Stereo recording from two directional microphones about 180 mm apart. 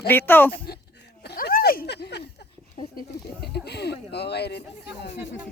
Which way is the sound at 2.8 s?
60° left (ahead or behind).